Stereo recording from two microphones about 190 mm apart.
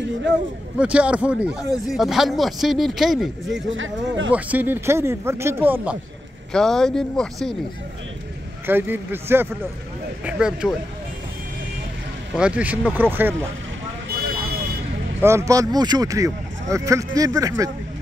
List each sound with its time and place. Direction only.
0.7 s speech: 5° right (ahead or behind)
3.7 s speech: 90° right
4.3 s speech: 10° right (ahead or behind)
6.5 s speech: centre (ahead or behind)
8.6 s speech: 10° right (ahead or behind)
12.4 s speech: 5° right (ahead or behind)
15.1 s speech: 15° right (ahead or behind)